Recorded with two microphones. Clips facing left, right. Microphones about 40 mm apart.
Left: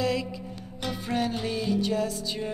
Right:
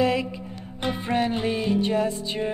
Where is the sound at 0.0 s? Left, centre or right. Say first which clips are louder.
Right 5 dB; right.